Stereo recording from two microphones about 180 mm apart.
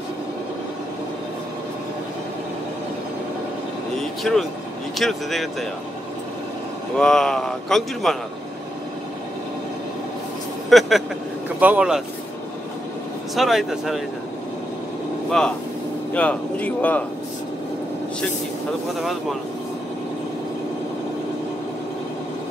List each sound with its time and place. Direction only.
4.0 s a man's voice: centre (ahead or behind)
7.0 s a man's voice: 5° left (ahead or behind)
10.7 s vehicle: centre (ahead or behind)
11.4 s speech: 10° right (ahead or behind)
13.3 s a man's voice: centre (ahead or behind)
16.1 s speech: 10° left (ahead or behind)